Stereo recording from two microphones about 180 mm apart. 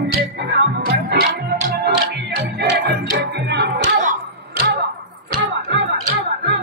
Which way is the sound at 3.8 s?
45° right (ahead or behind).